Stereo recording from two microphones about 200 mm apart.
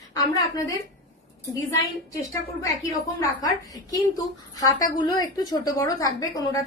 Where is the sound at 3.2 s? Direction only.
15° left (ahead or behind).